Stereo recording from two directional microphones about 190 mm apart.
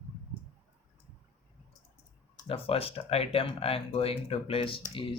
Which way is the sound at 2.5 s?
30° left (ahead or behind).